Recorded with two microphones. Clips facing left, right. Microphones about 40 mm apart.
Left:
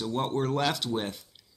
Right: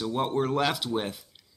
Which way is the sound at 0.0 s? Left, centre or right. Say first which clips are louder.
Right 2 dB; centre.